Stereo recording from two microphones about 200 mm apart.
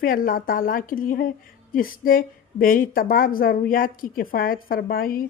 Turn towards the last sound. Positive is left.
turn(degrees=45)  # may be behind; listen again after turning